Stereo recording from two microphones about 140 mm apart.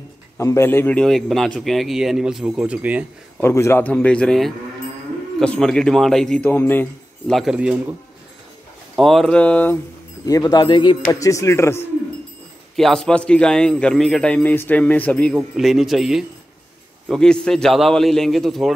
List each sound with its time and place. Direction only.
0.4 s a man's voice: 20° left (ahead or behind); by 3.1 s 10° right (ahead or behind)
3.3 s a man's voice: 20° left (ahead or behind)
7.3 s speech: 5° right (ahead or behind)
8.9 s a man's voice: centre (ahead or behind)
10.2 s speech: 25° left (ahead or behind)
11.1 s speech: 25° left (ahead or behind)
12.7 s a man's voice: centre (ahead or behind)
15.3 s a man's voice: centre (ahead or behind)